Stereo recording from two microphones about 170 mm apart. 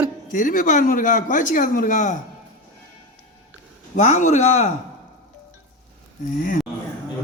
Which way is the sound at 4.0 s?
45° left (ahead or behind).